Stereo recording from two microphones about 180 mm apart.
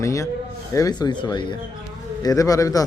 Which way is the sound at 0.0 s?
15° left (ahead or behind).